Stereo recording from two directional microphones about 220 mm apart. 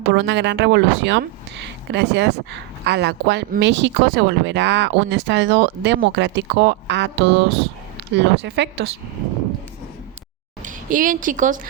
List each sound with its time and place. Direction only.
0.1 s speech: 50° right (ahead or behind)
10.6 s a woman's voice: 35° right (ahead or behind)